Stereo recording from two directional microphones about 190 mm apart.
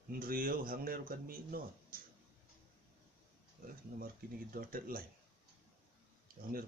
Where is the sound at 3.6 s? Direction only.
50° right (ahead or behind).